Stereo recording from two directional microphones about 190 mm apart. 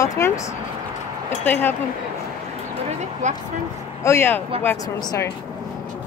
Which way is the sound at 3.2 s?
40° right (ahead or behind).